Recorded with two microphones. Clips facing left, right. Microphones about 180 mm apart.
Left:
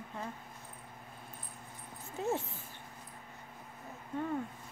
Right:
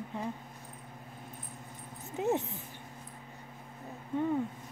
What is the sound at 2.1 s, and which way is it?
Speech, 20° right (ahead or behind).